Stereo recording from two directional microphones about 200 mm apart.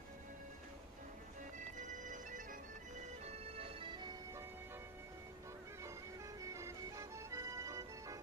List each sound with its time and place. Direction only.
1.8 s music: 40° right (ahead or behind)
3.3 s music: 30° right (ahead or behind)
6.4 s music: 15° right (ahead or behind)